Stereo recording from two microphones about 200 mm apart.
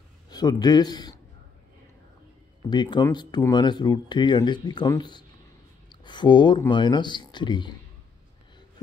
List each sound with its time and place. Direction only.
0.3 s speech: 20° left (ahead or behind)
2.7 s speech: 20° left (ahead or behind)